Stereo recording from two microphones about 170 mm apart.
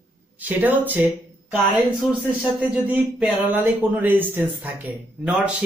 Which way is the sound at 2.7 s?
10° right (ahead or behind).